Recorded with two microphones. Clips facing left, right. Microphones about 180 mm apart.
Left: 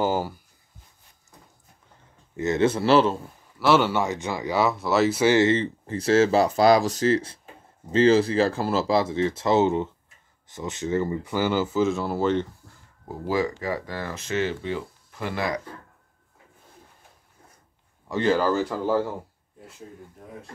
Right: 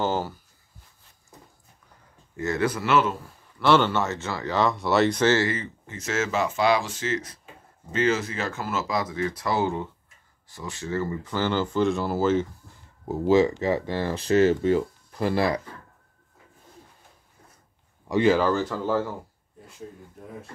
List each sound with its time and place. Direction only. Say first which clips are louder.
0.0 s a sound: left 2 dB; 10° left (ahead or behind)
2.3 s speech: left 4 dB; 20° left (ahead or behind)
3.5 s speech: even; 5° left (ahead or behind)
5.5 s speech: left 8 dB; 30° left (ahead or behind); by 12.4 s centre (ahead or behind)
13.1 s speech: right 6 dB; 25° right (ahead or behind)
18.0 s speech: right 4 dB; 15° right (ahead or behind)
18.3 s speech: even; 5° left (ahead or behind)